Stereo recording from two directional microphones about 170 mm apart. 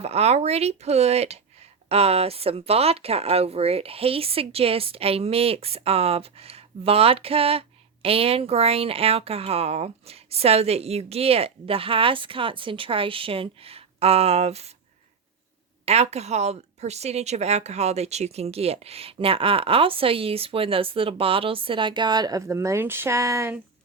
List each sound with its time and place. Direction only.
0.0 s a woman's voice: 40° right (ahead or behind)
15.9 s a woman's voice: 40° right (ahead or behind); by 23.6 s 15° right (ahead or behind)